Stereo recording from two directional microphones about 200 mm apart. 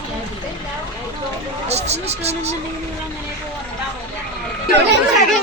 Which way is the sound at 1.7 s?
35° right (ahead or behind).